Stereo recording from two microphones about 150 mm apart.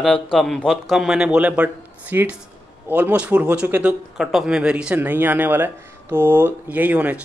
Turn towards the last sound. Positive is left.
turn(degrees=-10)  # may be behind; listen again after turning